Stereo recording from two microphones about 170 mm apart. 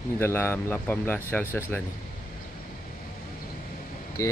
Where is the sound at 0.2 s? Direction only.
15° left (ahead or behind).